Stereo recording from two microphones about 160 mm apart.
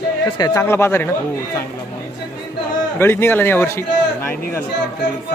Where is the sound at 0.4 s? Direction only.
15° left (ahead or behind).